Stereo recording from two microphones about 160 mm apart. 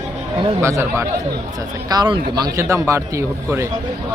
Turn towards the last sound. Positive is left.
turn(degrees=-20)  # may be behind; listen again after turning